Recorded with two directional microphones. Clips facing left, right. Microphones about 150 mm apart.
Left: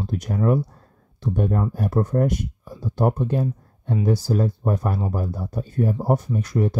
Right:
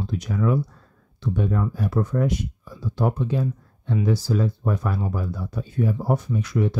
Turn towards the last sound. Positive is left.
turn(degrees=45)  # may be behind; listen again after turning